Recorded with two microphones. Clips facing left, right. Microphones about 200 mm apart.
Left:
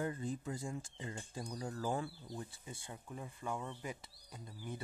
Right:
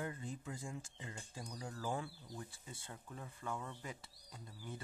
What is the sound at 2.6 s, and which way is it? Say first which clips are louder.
Speech: left 3 dB; 15° left (ahead or behind).